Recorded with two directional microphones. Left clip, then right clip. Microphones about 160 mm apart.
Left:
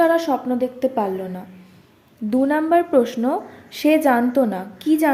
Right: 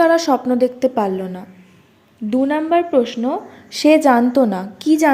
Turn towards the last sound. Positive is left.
turn(degrees=-20)  # may be behind; listen again after turning